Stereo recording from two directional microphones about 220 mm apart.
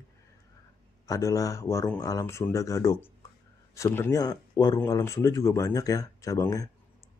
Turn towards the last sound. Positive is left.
turn(degrees=15)  # may be behind; listen again after turning